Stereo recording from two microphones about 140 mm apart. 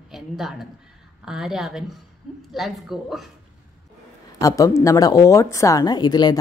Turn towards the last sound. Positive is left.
turn(degrees=30)  # may be behind; listen again after turning